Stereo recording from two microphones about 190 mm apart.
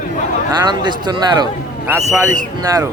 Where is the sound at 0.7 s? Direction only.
25° right (ahead or behind).